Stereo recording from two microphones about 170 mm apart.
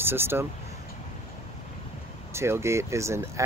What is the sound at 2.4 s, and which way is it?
Speech, 15° right (ahead or behind).